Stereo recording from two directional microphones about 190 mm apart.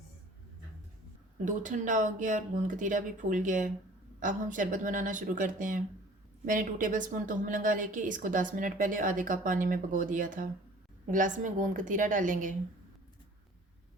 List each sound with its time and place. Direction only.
1.5 s a woman's voice: 40° right (ahead or behind)